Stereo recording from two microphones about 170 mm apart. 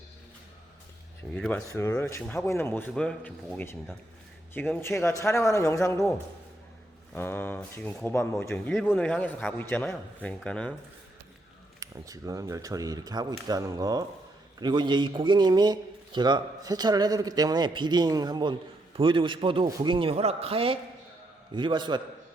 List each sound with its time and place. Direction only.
1.3 s speech: 5° left (ahead or behind)
1.6 s a man's voice: 15° left (ahead or behind)
7.1 s a man's voice: 10° left (ahead or behind)
11.8 s a man's voice: 20° right (ahead or behind)